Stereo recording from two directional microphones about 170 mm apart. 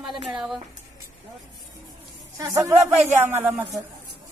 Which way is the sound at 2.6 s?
15° right (ahead or behind).